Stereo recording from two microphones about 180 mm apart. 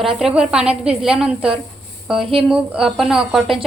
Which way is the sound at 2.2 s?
30° right (ahead or behind).